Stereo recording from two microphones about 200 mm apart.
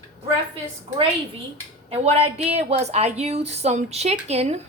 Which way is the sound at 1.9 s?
30° right (ahead or behind).